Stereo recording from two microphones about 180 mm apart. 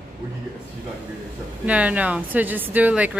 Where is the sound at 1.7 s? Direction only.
10° right (ahead or behind).